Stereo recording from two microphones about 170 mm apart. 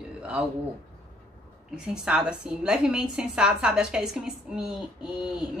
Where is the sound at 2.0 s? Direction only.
5° right (ahead or behind).